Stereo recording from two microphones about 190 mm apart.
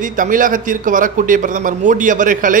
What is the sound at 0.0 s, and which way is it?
A man's voice, 45° right (ahead or behind).